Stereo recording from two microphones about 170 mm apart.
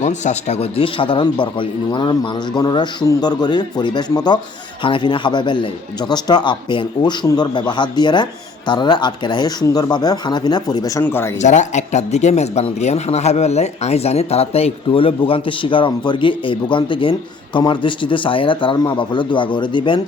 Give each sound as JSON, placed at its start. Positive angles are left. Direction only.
{"t": 0.0, "sound": "a man's voice", "side_deg": 45}
{"t": 11.3, "sound": "a man's voice", "side_deg": 45}